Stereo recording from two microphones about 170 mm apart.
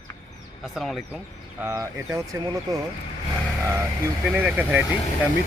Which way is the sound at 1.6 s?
15° right (ahead or behind).